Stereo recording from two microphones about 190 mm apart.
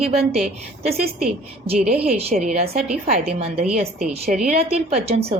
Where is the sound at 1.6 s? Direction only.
35° right (ahead or behind).